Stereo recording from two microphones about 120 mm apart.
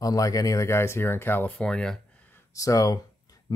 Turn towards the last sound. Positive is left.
turn(degrees=30)  # may be behind; listen again after turning